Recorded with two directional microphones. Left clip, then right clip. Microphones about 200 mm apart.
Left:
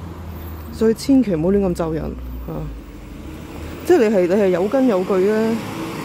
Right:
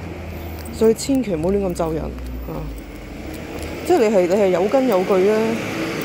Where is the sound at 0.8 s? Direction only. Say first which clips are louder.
Even; 15° left (ahead or behind).